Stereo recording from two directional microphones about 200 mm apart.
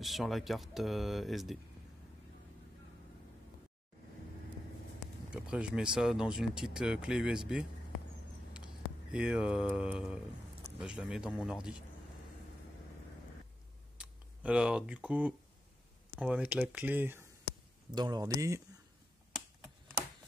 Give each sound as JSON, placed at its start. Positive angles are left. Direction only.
{"t": 0.0, "sound": "speech", "side_deg": 0}
{"t": 5.3, "sound": "speech", "side_deg": -5}
{"t": 9.1, "sound": "speech", "side_deg": -5}
{"t": 13.9, "sound": "speech", "side_deg": -5}